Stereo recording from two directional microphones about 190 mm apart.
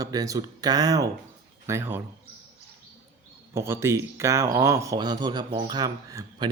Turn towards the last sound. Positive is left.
turn(degrees=-20)  # may be behind; listen again after turning